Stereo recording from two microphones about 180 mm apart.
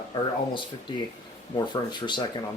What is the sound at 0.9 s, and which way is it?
Speech, 25° left (ahead or behind).